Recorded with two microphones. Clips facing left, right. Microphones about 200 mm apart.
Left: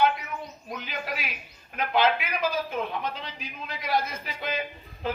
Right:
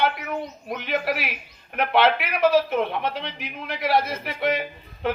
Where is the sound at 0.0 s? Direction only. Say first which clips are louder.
Right 1 dB; 70° right (ahead or behind).